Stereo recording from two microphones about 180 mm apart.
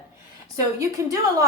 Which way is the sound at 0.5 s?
20° right (ahead or behind).